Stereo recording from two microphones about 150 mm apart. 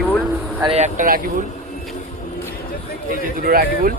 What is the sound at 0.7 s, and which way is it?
Speech, 55° right (ahead or behind).